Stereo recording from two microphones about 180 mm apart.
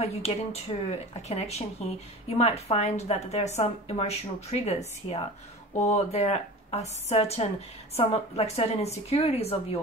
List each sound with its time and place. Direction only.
0.0 s a woman's voice: 35° left (ahead or behind)